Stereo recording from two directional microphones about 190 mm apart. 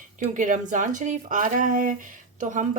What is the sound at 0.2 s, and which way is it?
Speech, 40° right (ahead or behind).